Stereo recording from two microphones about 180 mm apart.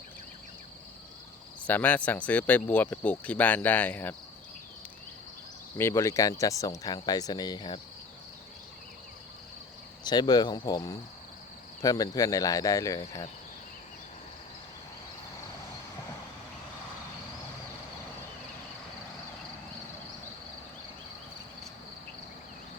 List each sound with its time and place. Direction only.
1.6 s speech: 10° left (ahead or behind)
5.7 s speech: 15° left (ahead or behind)
10.0 s speech: 25° left (ahead or behind)